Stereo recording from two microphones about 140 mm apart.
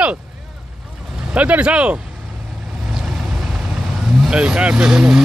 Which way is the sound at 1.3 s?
10° right (ahead or behind).